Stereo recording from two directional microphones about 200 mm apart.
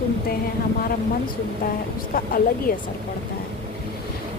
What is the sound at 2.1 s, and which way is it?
Speech, 45° left (ahead or behind).